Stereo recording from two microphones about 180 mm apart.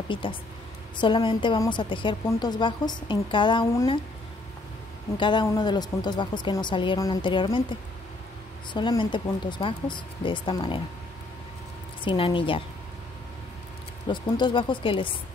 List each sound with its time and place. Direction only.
0.1 s a woman's voice: 30° left (ahead or behind)
5.1 s a woman's voice: 25° left (ahead or behind)
8.7 s a woman's voice: 25° left (ahead or behind)
12.0 s a woman's voice: 25° left (ahead or behind)
14.0 s a woman's voice: 25° left (ahead or behind)